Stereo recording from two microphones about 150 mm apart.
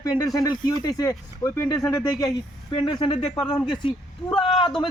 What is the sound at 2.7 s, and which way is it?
Speech, 30° left (ahead or behind).